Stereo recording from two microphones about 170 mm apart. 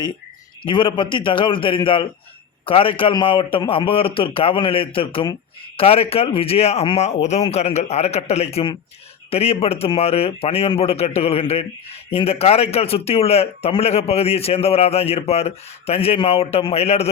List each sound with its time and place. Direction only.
0.6 s a man's voice: 30° left (ahead or behind)